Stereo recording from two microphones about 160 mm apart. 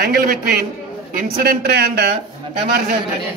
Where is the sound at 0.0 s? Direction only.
75° right (ahead or behind); by 2.0 s 90° right.